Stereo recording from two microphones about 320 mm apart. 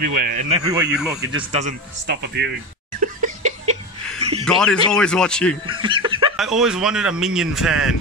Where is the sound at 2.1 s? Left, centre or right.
Right.